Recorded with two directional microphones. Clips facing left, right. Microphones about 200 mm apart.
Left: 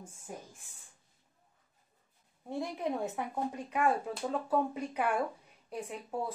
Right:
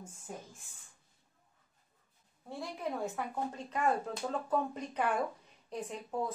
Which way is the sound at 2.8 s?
15° left (ahead or behind).